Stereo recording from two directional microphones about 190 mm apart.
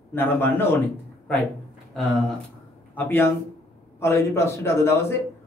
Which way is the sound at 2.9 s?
10° left (ahead or behind).